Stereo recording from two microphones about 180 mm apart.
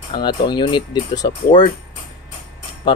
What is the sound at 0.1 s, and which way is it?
Speech, 25° left (ahead or behind).